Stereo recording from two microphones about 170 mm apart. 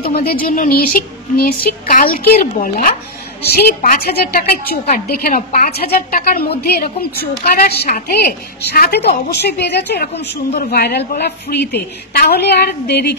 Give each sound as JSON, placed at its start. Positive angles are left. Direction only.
{"t": 0.2, "sound": "a woman's voice", "side_deg": 60}
{"t": 10.6, "sound": "a woman's voice", "side_deg": 65}